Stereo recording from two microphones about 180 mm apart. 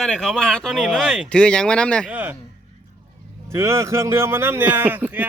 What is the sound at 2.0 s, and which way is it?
Speech, 10° right (ahead or behind).